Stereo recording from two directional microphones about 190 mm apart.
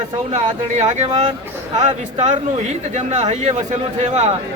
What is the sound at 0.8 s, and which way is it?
Speech, 40° right (ahead or behind).